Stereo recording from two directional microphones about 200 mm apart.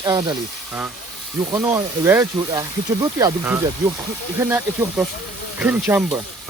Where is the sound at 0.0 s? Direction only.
20° right (ahead or behind).